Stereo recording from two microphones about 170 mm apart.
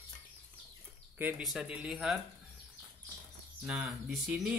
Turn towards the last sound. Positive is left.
turn(degrees=-5)  # may be behind; listen again after turning